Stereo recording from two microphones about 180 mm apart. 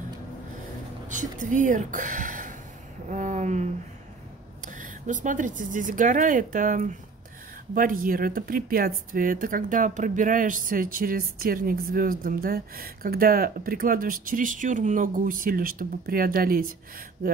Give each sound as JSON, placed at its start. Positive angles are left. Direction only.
{"t": 1.0, "sound": "speech", "side_deg": -45}
{"t": 4.6, "sound": "speech", "side_deg": -45}